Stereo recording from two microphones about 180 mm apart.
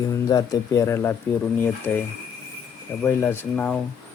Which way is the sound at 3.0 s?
10° left (ahead or behind).